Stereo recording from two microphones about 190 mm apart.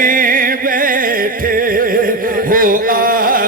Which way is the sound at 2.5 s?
45° right (ahead or behind).